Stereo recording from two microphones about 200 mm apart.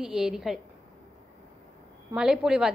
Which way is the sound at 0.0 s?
5° right (ahead or behind).